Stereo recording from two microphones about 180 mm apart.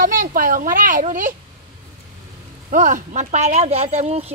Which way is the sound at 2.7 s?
45° right (ahead or behind).